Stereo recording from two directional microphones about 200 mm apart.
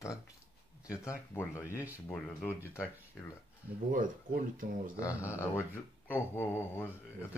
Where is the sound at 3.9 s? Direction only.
45° right (ahead or behind).